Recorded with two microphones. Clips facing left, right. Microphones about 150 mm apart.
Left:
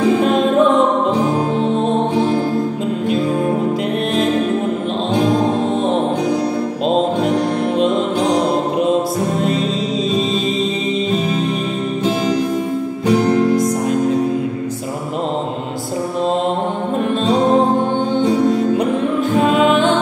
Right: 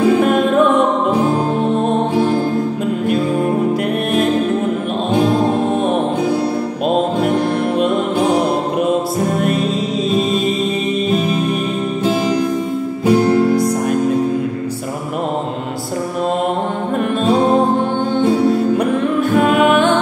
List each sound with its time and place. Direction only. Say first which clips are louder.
0.2 s music: even; 25° left (ahead or behind)
13.0 s music: right 2 dB; 5° right (ahead or behind)